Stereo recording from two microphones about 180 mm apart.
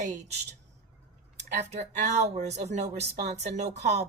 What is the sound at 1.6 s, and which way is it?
Speech, 40° right (ahead or behind).